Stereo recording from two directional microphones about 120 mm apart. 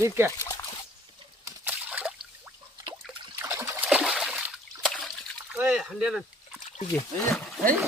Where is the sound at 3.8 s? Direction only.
10° right (ahead or behind).